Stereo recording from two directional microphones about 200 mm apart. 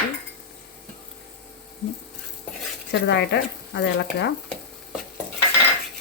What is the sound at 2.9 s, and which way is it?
Speech, 60° left (ahead or behind).